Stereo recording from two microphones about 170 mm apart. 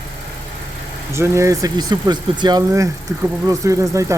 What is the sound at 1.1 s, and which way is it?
Speech, 15° right (ahead or behind).